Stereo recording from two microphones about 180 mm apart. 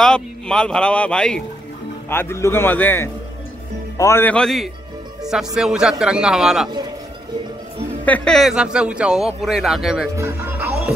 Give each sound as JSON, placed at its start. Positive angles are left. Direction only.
{"t": 0.0, "sound": "a man's voice", "side_deg": 5}
{"t": 8.0, "sound": "a man's voice", "side_deg": 5}
{"t": 10.1, "sound": "speech", "side_deg": -15}